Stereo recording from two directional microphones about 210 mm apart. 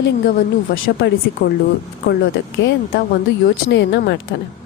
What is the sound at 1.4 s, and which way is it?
Speech, 60° left (ahead or behind).